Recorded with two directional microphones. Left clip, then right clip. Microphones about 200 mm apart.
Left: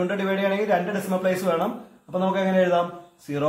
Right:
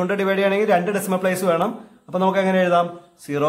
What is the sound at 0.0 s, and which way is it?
A man's voice, 30° right (ahead or behind).